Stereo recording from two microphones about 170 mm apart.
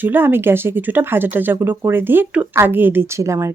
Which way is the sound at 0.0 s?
10° right (ahead or behind).